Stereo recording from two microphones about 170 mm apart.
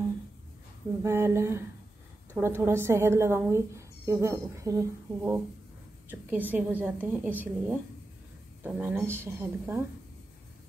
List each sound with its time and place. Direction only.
1.0 s speech: 15° right (ahead or behind)